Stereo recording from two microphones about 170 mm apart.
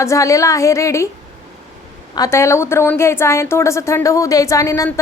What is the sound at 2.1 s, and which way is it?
A woman's voice, 20° left (ahead or behind).